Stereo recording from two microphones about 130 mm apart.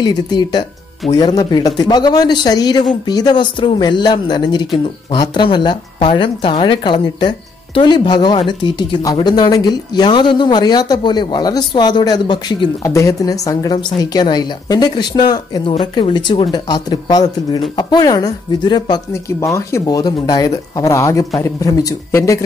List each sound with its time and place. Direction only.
0.0 s speech: 35° left (ahead or behind)
12.8 s speech: 25° left (ahead or behind)
19.4 s speech: 25° left (ahead or behind)